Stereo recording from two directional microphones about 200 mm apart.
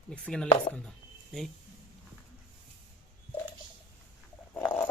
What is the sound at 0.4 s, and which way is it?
Chopping, 25° left (ahead or behind).